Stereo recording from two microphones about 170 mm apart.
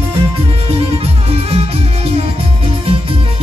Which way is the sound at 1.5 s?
35° right (ahead or behind).